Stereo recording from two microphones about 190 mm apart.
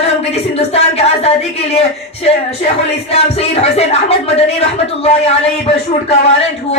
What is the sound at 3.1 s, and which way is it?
Speech, 35° left (ahead or behind).